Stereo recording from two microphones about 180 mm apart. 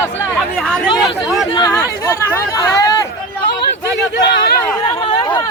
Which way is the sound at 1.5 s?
20° left (ahead or behind).